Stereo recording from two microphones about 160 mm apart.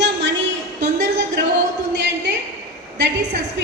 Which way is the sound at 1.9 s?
90° right.